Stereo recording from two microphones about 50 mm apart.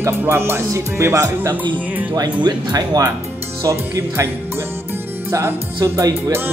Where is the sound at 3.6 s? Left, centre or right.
Right.